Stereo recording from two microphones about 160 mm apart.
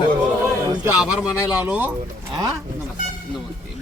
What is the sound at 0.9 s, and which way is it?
Speech, 5° right (ahead or behind).